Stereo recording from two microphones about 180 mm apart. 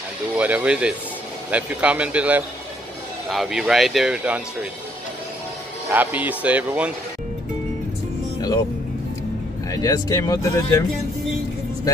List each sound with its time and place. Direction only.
0.4 s speech: 10° right (ahead or behind)
5.9 s speech: 10° right (ahead or behind)
9.7 s speech: 20° left (ahead or behind)